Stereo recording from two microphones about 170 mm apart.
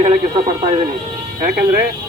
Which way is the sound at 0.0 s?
35° right (ahead or behind).